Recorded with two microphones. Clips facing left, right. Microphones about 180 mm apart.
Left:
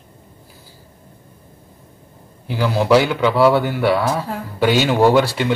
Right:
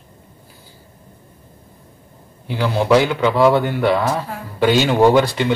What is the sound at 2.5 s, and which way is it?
Speech, 5° left (ahead or behind).